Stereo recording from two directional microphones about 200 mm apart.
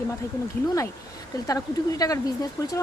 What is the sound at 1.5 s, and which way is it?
A woman's voice, 15° left (ahead or behind).